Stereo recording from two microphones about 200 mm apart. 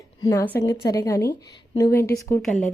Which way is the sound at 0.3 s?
10° left (ahead or behind).